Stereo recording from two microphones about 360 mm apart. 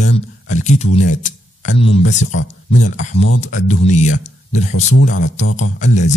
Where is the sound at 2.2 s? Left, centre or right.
Left.